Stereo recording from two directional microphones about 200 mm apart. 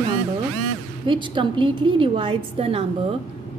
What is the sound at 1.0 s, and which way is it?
A woman's voice, 25° right (ahead or behind).